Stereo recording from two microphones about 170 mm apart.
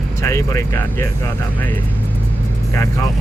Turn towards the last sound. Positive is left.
turn(degrees=15)  # may be behind; listen again after turning